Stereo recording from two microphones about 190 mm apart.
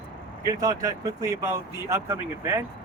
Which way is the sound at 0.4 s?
20° right (ahead or behind).